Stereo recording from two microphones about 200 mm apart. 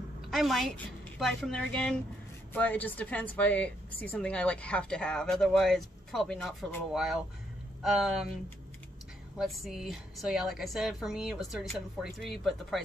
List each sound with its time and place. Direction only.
0.3 s a woman's voice: centre (ahead or behind)
9.4 s a woman's voice: centre (ahead or behind)